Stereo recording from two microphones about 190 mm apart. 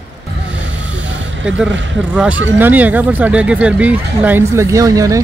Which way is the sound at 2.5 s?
10° right (ahead or behind).